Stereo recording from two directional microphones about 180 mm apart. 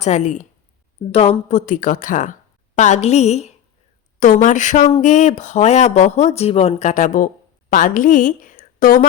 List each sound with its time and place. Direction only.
0.0 s a woman's voice: 40° left (ahead or behind)